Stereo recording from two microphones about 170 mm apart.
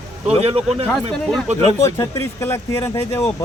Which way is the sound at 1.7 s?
15° left (ahead or behind).